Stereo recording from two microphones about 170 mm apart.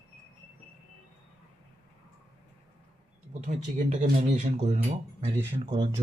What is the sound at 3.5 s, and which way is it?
Speech, 40° right (ahead or behind).